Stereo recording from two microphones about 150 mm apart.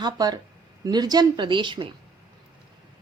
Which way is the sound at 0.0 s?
25° right (ahead or behind).